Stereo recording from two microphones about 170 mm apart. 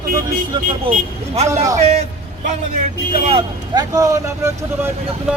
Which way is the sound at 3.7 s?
20° right (ahead or behind).